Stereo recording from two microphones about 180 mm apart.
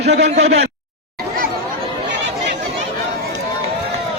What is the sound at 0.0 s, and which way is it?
Speech, 35° right (ahead or behind).